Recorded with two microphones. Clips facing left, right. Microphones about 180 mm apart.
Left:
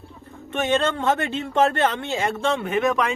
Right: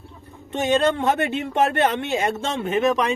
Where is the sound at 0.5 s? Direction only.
20° right (ahead or behind).